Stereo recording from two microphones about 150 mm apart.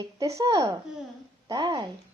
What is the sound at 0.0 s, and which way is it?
Speech, 20° right (ahead or behind).